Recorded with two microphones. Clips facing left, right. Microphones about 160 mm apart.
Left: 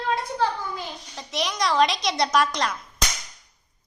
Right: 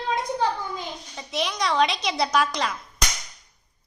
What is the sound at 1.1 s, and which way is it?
A woman's voice, centre (ahead or behind).